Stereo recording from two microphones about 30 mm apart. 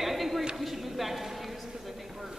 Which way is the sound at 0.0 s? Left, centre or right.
Centre.